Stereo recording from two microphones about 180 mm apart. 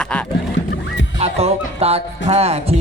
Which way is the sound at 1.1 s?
35° right (ahead or behind).